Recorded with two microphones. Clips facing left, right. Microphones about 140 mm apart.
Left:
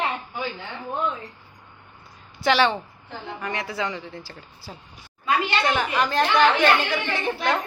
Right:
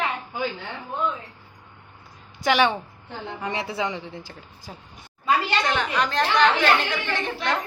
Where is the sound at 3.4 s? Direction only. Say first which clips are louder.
Right 1 dB; 25° right (ahead or behind).